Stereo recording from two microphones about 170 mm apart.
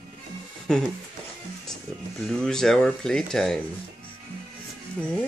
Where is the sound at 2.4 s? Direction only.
5° left (ahead or behind).